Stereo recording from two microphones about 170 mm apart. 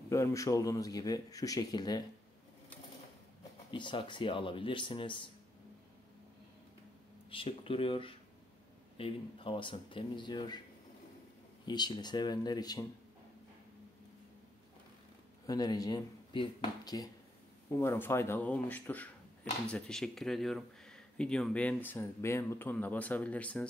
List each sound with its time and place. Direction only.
0.1 s speech: 15° left (ahead or behind)
3.7 s speech: 30° left (ahead or behind)
7.2 s speech: 30° left (ahead or behind)
11.6 s speech: 25° left (ahead or behind)
15.4 s speech: 20° left (ahead or behind)